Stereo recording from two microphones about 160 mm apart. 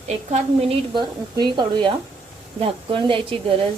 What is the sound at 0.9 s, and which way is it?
A woman's voice, 25° right (ahead or behind).